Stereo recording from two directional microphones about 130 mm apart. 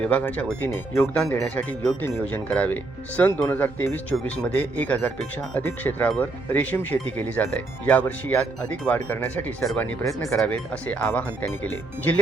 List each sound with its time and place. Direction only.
0.0 s speech: 10° left (ahead or behind)